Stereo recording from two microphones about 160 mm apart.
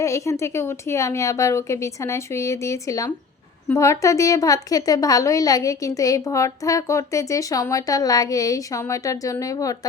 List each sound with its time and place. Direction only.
0.0 s a woman's voice: 20° left (ahead or behind)